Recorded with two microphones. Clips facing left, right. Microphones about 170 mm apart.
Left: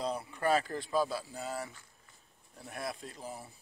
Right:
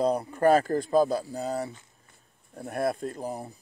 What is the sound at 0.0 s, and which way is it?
Speech, 45° right (ahead or behind).